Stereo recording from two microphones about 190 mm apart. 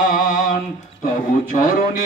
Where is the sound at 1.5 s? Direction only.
45° left (ahead or behind).